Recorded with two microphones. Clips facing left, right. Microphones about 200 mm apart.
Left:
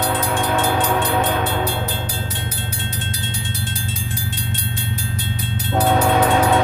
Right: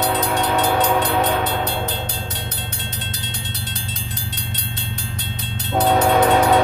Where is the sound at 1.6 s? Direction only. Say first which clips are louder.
Left 1 dB; 10° left (ahead or behind).